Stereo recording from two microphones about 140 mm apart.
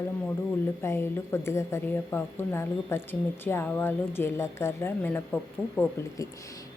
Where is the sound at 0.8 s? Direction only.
15° left (ahead or behind).